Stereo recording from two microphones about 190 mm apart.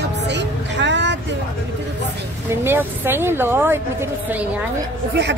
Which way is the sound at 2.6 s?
10° right (ahead or behind).